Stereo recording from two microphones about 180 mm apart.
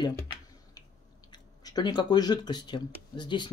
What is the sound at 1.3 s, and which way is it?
Speech, 20° left (ahead or behind).